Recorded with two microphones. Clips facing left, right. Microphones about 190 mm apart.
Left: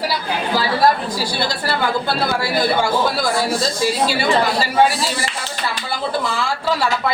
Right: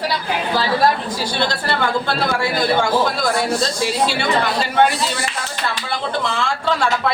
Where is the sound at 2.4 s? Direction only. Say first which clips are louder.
Even; 5° left (ahead or behind).